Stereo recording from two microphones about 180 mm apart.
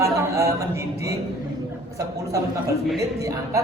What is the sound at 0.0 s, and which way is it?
A man's voice, 15° right (ahead or behind).